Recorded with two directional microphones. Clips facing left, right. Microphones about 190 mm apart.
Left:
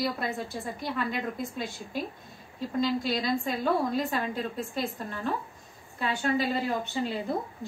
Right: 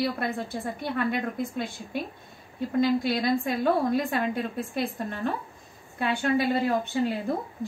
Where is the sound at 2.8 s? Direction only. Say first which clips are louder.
Right 4 dB; 55° right (ahead or behind).